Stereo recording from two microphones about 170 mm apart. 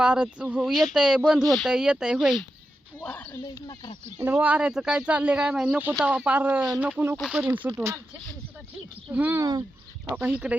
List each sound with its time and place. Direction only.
0.0 s speech: 10° right (ahead or behind); by 3.2 s 10° left (ahead or behind)
4.2 s speech: 10° right (ahead or behind)
9.1 s speech: 15° right (ahead or behind)
10.1 s speech: 10° right (ahead or behind)